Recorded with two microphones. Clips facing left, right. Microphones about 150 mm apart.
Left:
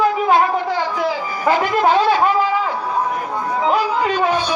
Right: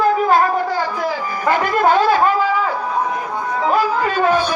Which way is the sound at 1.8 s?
45° right (ahead or behind).